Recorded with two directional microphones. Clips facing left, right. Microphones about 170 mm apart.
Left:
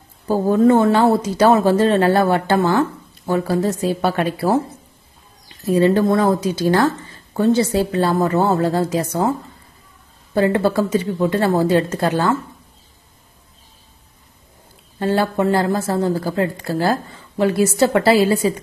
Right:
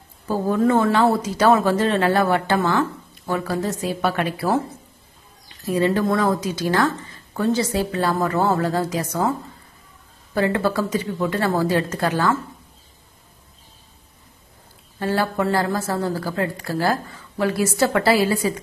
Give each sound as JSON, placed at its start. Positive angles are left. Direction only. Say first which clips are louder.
{"t": 0.3, "sound": "speech", "louder": "left 5 dB", "side_deg": 30}
{"t": 5.7, "sound": "a woman's voice", "louder": "left 5 dB", "side_deg": 30}
{"t": 10.3, "sound": "a woman's voice", "louder": "left 4 dB", "side_deg": 30}
{"t": 15.0, "sound": "a woman's voice", "louder": "left 4 dB", "side_deg": 25}